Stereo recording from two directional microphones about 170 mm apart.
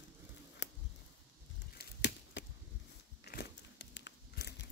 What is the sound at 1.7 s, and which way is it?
Chop, 85° left.